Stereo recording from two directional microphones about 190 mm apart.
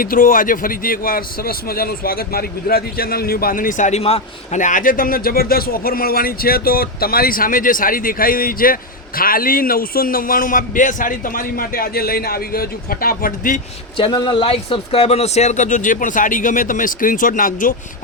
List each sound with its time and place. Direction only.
0.0 s speech: 50° left (ahead or behind)
13.9 s speech: 25° left (ahead or behind); by 17.7 s 45° left (ahead or behind)